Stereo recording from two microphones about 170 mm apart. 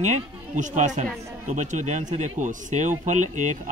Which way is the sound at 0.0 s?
45° right (ahead or behind).